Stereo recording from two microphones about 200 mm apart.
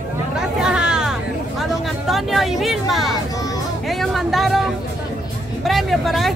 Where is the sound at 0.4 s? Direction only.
5° right (ahead or behind).